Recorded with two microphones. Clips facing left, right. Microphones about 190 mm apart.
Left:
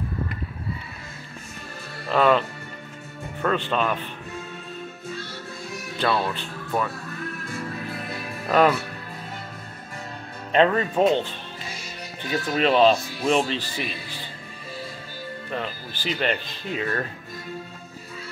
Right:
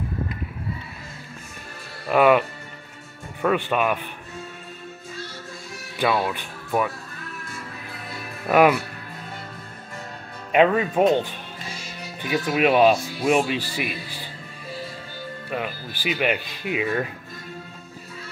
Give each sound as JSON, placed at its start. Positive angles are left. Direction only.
{"t": 2.0, "sound": "speech", "side_deg": -10}
{"t": 3.4, "sound": "speech", "side_deg": -10}
{"t": 5.9, "sound": "speech", "side_deg": -10}
{"t": 8.5, "sound": "speech", "side_deg": -10}
{"t": 10.5, "sound": "speech", "side_deg": -10}
{"t": 12.2, "sound": "speech", "side_deg": -10}
{"t": 15.5, "sound": "speech", "side_deg": -10}